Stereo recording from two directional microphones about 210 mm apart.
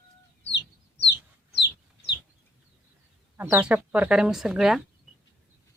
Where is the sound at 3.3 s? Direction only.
10° right (ahead or behind).